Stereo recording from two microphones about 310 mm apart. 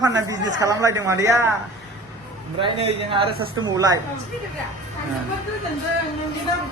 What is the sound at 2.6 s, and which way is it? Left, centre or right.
A man's voice, centre.